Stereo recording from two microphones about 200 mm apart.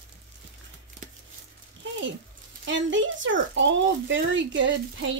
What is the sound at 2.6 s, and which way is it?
Speech, 70° right (ahead or behind).